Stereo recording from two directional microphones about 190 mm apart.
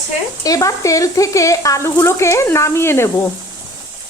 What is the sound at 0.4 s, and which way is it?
A woman's voice, 15° left (ahead or behind).